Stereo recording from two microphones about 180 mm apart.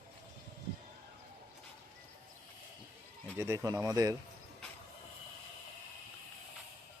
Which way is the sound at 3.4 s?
15° right (ahead or behind).